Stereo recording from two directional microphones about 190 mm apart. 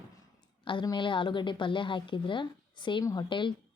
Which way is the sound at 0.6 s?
25° left (ahead or behind).